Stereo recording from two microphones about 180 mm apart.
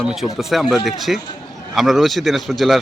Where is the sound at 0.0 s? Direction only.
5° right (ahead or behind).